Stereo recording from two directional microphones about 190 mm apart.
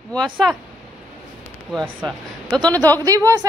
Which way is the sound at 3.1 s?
15° right (ahead or behind).